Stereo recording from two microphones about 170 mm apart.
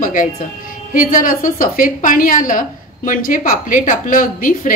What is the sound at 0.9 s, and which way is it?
A woman's voice, 55° left (ahead or behind).